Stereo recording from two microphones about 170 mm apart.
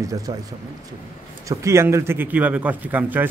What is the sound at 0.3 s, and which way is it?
Speech, 25° right (ahead or behind).